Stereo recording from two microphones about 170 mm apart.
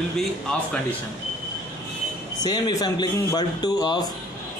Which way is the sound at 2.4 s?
25° left (ahead or behind).